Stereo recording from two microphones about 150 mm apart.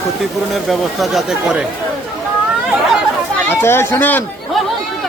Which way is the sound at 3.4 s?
15° left (ahead or behind).